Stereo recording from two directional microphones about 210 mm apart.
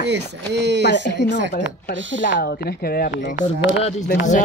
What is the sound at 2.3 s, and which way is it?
Speech, 50° left (ahead or behind).